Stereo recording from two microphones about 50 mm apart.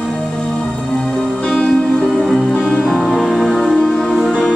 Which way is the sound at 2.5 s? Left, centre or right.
Centre.